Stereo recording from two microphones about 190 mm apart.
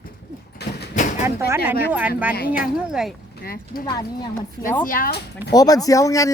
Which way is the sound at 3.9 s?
20° left (ahead or behind).